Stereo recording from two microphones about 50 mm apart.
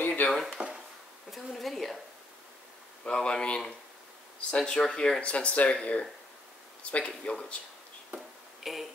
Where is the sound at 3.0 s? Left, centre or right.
Centre.